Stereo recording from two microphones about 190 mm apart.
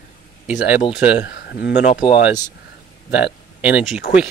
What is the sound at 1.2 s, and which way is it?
Speech, 60° left (ahead or behind).